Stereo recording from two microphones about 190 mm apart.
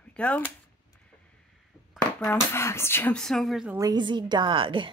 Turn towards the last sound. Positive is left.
turn(degrees=-25)  # may be behind; listen again after turning